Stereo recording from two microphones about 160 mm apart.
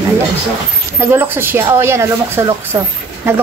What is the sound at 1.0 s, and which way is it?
Speech, 10° right (ahead or behind).